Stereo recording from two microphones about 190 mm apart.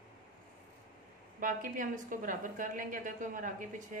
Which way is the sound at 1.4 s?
45° right (ahead or behind).